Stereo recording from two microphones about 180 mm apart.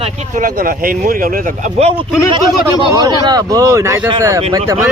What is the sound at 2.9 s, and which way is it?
Speech, 20° right (ahead or behind).